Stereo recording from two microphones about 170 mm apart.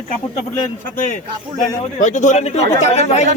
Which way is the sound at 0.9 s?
50° left (ahead or behind).